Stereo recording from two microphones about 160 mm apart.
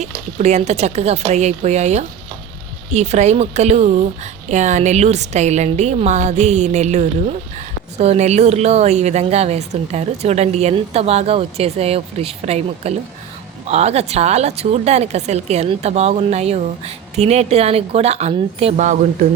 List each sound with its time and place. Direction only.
0.3 s speech: 45° right (ahead or behind)